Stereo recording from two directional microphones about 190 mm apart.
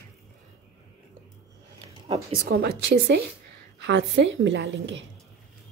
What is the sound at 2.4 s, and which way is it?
A woman's voice, 55° right (ahead or behind).